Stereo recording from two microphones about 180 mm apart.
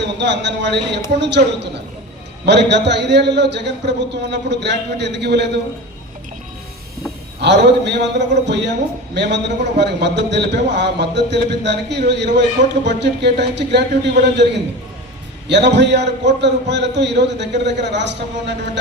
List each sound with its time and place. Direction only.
0.0 s a man's voice: 75° right (ahead or behind)
7.4 s a man's voice: 75° right (ahead or behind)